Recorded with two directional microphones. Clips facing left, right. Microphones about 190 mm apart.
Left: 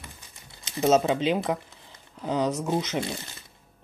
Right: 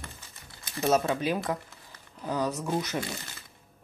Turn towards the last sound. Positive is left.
turn(degrees=20)  # may be behind; listen again after turning